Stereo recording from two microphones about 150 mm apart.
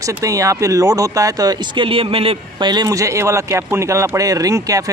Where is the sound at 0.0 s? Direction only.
20° right (ahead or behind).